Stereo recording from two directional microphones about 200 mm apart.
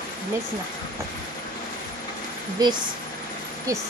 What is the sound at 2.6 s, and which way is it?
Speech, 20° right (ahead or behind).